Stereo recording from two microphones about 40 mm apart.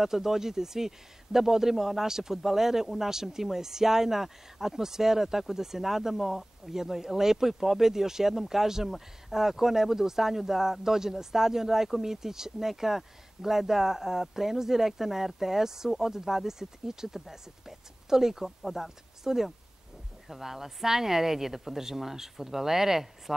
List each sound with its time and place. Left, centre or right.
0.0 s speech: centre